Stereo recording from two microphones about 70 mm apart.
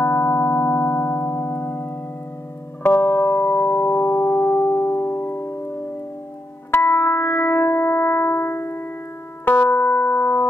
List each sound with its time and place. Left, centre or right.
0.0 s music: left